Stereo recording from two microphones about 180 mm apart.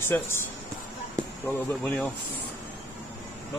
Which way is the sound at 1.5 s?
5° left (ahead or behind).